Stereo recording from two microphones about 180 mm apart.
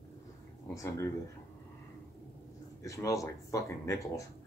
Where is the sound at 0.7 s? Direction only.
15° left (ahead or behind).